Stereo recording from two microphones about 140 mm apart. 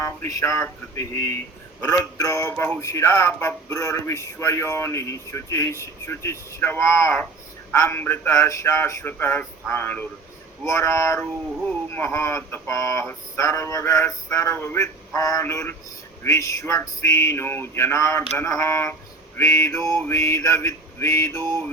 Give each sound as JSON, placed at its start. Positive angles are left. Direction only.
{"t": 0.0, "sound": "speech", "side_deg": 25}